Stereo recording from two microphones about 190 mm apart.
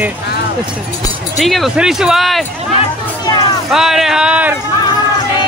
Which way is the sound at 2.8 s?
25° left (ahead or behind).